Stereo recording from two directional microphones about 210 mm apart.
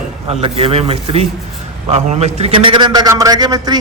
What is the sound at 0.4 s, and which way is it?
A man's voice, 30° right (ahead or behind).